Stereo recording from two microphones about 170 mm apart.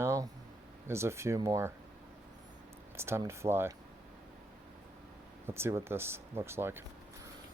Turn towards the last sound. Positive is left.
turn(degrees=-15)  # may be behind; listen again after turning